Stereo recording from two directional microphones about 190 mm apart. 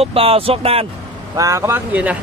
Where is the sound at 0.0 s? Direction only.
30° right (ahead or behind).